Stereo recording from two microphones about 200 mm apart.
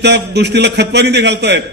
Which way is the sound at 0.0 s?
60° right (ahead or behind).